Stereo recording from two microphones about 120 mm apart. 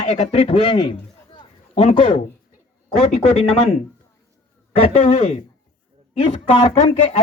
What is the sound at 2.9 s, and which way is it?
Speech, 60° left (ahead or behind).